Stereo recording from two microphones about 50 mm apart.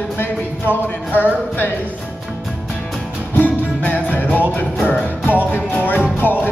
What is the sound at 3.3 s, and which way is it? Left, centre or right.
Music, left.